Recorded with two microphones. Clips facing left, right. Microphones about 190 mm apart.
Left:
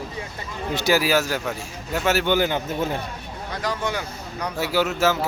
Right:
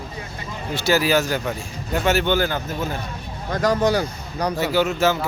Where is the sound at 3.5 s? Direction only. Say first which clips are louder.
Right 8 dB; 45° right (ahead or behind).